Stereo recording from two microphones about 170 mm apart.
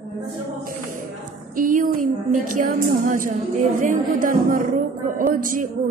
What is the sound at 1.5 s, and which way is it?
A woman's voice, 55° right (ahead or behind).